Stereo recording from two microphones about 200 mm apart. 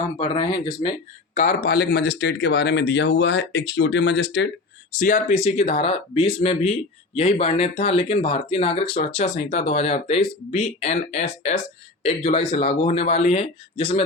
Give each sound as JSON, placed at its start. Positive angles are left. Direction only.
{"t": 0.2, "sound": "speech", "side_deg": 25}
{"t": 1.3, "sound": "speech", "side_deg": 40}
{"t": 4.9, "sound": "speech", "side_deg": 40}